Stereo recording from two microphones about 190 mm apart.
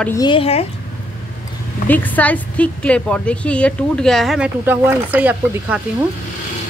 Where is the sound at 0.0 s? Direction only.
20° left (ahead or behind).